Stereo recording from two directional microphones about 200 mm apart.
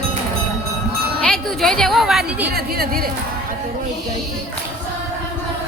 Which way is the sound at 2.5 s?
50° right (ahead or behind).